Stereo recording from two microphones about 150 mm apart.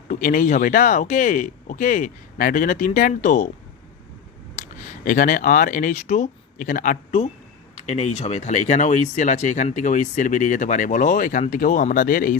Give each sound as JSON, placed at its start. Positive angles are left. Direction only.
{"t": 0.1, "sound": "speech", "side_deg": 65}
{"t": 5.0, "sound": "speech", "side_deg": 60}
{"t": 7.9, "sound": "speech", "side_deg": 45}